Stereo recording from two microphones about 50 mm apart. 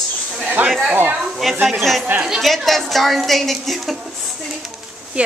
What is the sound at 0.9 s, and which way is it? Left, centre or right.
Speech, right.